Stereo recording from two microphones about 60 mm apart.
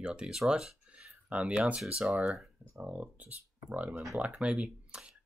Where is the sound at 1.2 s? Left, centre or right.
Centre.